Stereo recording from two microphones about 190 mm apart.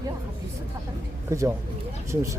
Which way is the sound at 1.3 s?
15° right (ahead or behind).